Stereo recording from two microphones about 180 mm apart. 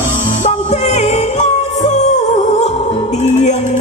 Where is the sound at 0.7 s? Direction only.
40° left (ahead or behind).